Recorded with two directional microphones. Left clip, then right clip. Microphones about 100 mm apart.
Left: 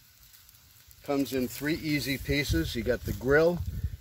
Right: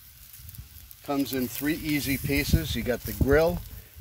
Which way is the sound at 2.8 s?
50° left (ahead or behind).